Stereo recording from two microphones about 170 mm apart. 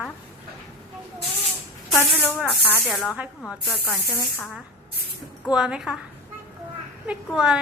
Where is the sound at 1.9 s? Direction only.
Centre (ahead or behind).